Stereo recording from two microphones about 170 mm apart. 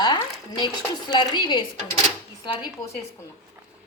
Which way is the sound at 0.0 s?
25° left (ahead or behind).